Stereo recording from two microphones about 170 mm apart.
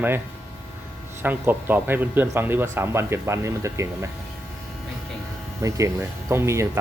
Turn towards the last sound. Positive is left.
turn(degrees=-15)  # may be behind; listen again after turning